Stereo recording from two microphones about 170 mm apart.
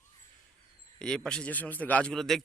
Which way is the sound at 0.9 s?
5° left (ahead or behind).